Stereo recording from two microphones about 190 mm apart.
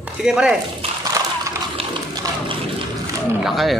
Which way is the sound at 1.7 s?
25° right (ahead or behind).